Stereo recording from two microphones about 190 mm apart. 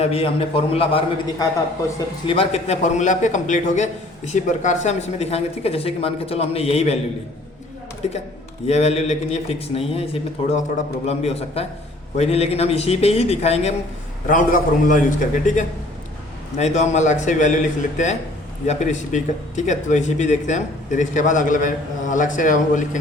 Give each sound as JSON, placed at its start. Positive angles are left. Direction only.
{"t": 0.0, "sound": "speech", "side_deg": 30}
{"t": 8.0, "sound": "speech", "side_deg": 35}
{"t": 14.3, "sound": "a man's voice", "side_deg": 45}